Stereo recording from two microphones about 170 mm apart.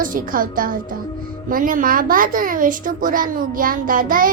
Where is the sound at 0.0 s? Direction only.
55° right (ahead or behind).